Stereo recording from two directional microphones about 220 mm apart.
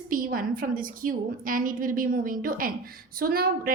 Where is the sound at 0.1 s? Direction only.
40° right (ahead or behind).